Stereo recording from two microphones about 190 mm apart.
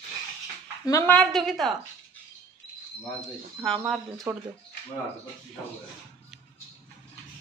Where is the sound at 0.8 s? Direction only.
15° left (ahead or behind).